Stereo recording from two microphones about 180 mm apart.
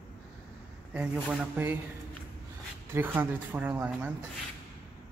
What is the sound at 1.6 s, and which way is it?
Speech, 10° right (ahead or behind).